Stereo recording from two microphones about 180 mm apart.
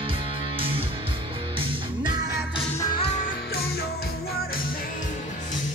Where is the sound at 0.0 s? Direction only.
30° right (ahead or behind).